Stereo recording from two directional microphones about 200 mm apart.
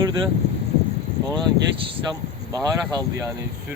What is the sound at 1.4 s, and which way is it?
Speech, 25° right (ahead or behind).